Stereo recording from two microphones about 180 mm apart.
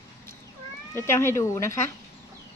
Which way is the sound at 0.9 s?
15° left (ahead or behind).